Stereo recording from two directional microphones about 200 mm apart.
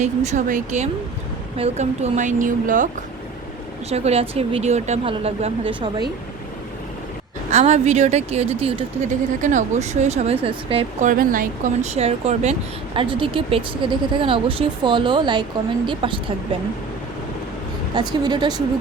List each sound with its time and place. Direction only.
0.3 s speech: 40° right (ahead or behind)
7.5 s speech: 35° right (ahead or behind)
11.1 s speech: 45° right (ahead or behind); by 16.2 s 25° right (ahead or behind)
17.9 s speech: 20° right (ahead or behind)